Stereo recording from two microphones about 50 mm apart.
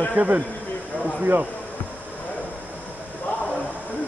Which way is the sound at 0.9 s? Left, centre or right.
Right.